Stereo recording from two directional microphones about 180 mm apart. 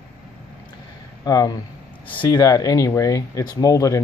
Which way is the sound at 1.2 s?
20° left (ahead or behind).